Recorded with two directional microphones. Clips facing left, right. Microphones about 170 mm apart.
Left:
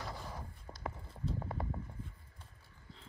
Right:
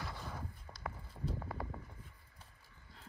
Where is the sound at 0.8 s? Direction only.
25° left (ahead or behind).